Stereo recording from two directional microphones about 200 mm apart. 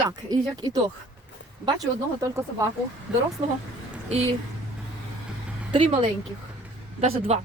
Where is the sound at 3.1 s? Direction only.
5° right (ahead or behind).